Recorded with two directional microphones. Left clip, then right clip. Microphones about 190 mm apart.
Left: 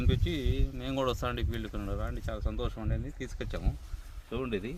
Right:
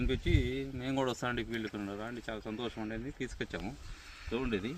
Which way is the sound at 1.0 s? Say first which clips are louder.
Left 2 dB; 35° left (ahead or behind).